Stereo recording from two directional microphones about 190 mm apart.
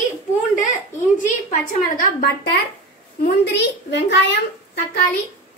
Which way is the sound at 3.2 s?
65° left (ahead or behind).